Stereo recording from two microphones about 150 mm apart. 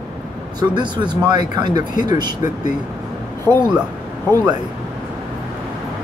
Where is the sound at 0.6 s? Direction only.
30° right (ahead or behind).